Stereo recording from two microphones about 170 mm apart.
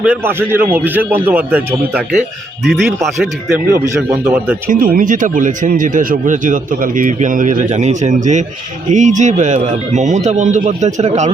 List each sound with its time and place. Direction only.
0.0 s speech: 10° right (ahead or behind)
2.6 s speech: centre (ahead or behind)
3.7 s speech: 15° right (ahead or behind)
4.7 s speech: 55° right (ahead or behind)